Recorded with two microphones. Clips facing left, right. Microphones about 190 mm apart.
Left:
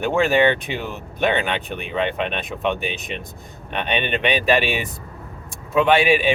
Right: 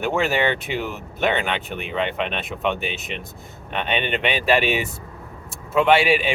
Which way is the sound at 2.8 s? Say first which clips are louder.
Left 1 dB; 15° left (ahead or behind).